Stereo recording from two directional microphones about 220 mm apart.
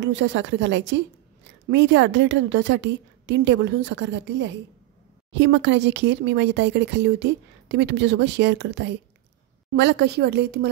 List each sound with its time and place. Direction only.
0.0 s a woman's voice: 55° right (ahead or behind)